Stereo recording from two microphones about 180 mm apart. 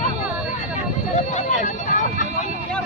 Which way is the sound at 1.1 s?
40° left (ahead or behind).